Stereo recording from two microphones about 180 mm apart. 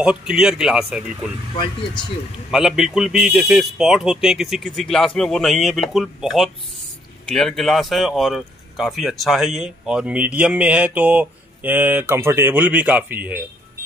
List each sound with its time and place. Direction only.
0.0 s speech: 5° right (ahead or behind)
2.5 s speech: 5° right (ahead or behind)